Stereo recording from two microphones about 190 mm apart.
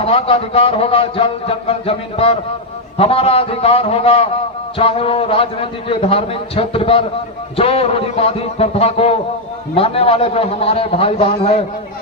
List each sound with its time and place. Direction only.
0.0 s a man's voice: 30° left (ahead or behind)